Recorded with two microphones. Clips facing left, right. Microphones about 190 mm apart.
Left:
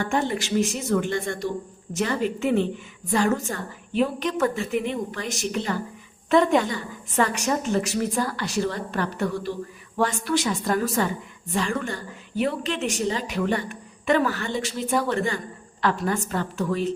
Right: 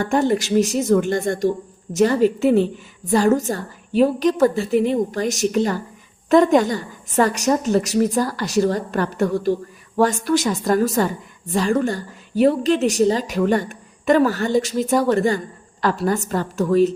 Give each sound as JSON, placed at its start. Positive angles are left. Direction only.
{"t": 0.0, "sound": "a woman's voice", "side_deg": -40}